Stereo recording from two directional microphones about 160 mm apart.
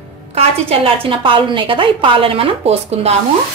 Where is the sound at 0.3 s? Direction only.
40° right (ahead or behind).